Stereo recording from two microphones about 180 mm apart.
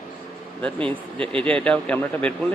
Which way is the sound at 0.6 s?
5° left (ahead or behind).